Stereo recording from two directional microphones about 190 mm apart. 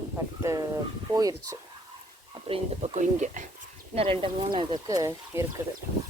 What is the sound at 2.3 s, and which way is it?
Speech, 30° right (ahead or behind).